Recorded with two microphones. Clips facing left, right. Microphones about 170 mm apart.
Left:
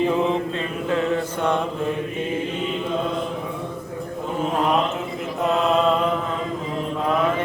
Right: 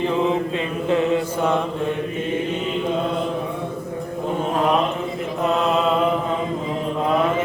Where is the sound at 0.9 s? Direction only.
20° right (ahead or behind).